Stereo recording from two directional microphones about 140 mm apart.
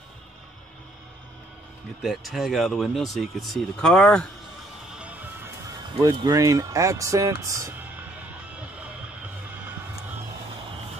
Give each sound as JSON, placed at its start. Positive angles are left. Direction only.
{"t": 2.0, "sound": "speech", "side_deg": 0}
{"t": 5.9, "sound": "speech", "side_deg": -25}